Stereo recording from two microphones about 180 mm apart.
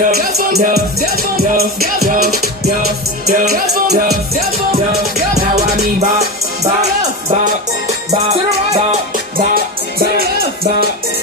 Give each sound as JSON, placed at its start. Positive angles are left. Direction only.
{"t": 0.0, "sound": "music", "side_deg": -55}
{"t": 5.9, "sound": "music", "side_deg": -40}
{"t": 9.4, "sound": "music", "side_deg": -55}